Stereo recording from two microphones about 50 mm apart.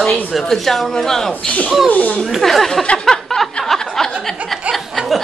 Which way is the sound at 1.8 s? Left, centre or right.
Left.